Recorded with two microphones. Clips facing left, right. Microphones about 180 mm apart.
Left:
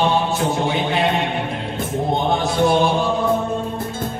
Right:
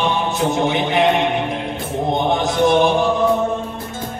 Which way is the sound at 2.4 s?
20° right (ahead or behind).